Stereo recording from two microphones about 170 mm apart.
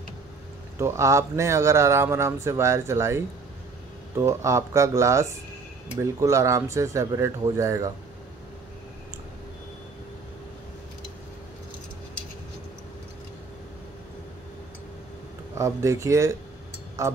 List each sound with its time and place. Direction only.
0.7 s speech: 15° right (ahead or behind)
15.5 s speech: 20° right (ahead or behind)
17.0 s music: 20° right (ahead or behind)